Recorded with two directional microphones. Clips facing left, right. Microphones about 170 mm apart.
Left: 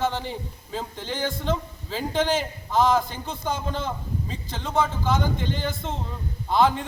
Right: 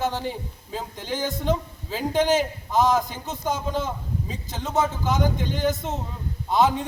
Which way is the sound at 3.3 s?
45° right (ahead or behind).